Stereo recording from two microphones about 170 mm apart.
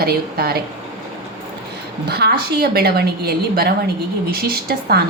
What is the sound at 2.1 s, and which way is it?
A woman's voice, 70° right (ahead or behind).